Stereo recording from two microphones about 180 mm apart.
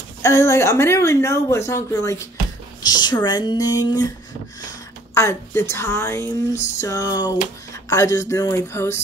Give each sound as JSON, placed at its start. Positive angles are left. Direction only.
{"t": 0.2, "sound": "speech", "side_deg": 15}
{"t": 5.1, "sound": "speech", "side_deg": 15}
{"t": 6.8, "sound": "a sound", "side_deg": 20}
{"t": 7.9, "sound": "speech", "side_deg": 20}